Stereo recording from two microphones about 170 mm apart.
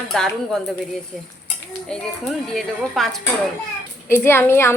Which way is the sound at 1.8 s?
Centre (ahead or behind).